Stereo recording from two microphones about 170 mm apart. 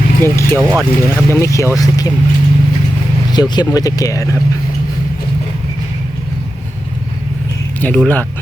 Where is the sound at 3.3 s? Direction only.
25° left (ahead or behind).